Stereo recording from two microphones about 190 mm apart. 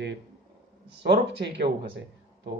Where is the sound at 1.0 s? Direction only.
65° right (ahead or behind).